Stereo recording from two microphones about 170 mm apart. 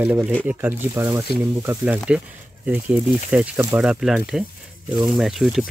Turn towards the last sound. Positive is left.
turn(degrees=0)  # may be behind; listen again after turning